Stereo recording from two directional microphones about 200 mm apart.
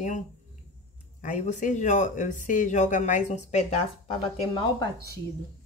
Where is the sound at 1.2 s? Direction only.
40° left (ahead or behind).